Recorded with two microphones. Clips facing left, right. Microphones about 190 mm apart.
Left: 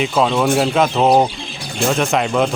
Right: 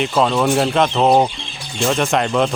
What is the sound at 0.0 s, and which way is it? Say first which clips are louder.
Speech: even; centre (ahead or behind).